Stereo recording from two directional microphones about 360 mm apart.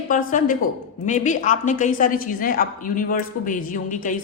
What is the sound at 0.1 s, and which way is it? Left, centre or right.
A woman's voice, left.